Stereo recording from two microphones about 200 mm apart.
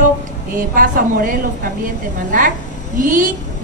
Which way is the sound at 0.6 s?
45° right (ahead or behind).